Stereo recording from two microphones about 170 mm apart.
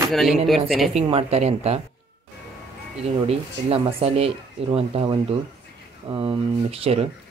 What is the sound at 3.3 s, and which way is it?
Speech, 35° right (ahead or behind).